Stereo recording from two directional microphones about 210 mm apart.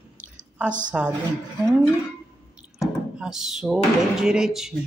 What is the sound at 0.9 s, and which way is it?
Speech, 5° right (ahead or behind).